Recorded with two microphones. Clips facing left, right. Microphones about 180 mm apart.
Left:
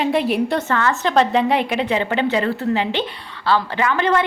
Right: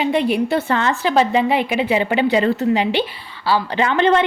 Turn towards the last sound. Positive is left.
turn(degrees=-25)  # may be behind; listen again after turning